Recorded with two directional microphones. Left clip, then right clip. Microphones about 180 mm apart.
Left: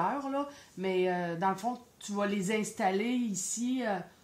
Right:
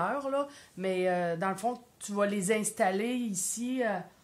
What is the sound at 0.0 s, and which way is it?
Speech, 20° right (ahead or behind).